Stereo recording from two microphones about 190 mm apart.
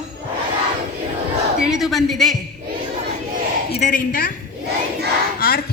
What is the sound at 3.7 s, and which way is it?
Speech, 40° left (ahead or behind).